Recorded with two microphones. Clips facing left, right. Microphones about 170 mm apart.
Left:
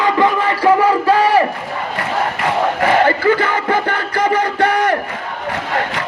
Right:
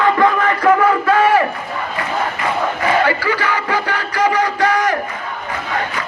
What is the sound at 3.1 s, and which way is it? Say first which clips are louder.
Music: left 4 dB; 50° left (ahead or behind).